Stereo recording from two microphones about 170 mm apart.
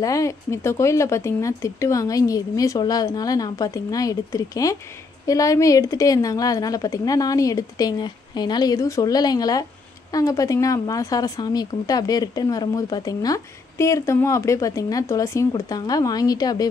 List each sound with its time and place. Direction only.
0.0 s a woman's voice: 20° left (ahead or behind)